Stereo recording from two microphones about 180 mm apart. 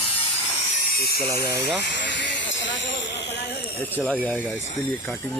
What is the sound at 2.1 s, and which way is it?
Hiss, 85° left.